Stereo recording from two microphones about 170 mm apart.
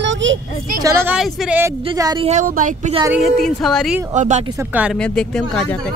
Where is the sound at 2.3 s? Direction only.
50° right (ahead or behind).